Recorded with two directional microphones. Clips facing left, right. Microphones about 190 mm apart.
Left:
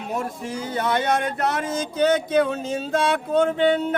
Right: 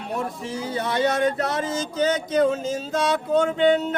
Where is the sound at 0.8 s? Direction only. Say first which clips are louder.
Right 1 dB; 55° left (ahead or behind).